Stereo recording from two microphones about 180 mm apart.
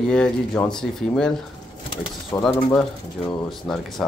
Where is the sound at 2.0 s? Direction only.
25° left (ahead or behind).